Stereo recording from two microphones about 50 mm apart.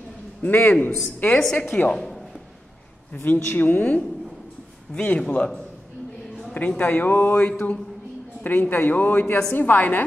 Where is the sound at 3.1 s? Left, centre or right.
Left.